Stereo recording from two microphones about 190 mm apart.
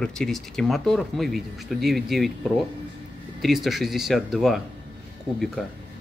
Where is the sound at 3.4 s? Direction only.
Centre (ahead or behind).